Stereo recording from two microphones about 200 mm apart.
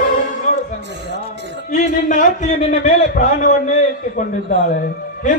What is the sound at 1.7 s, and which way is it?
A man's voice, 40° left (ahead or behind).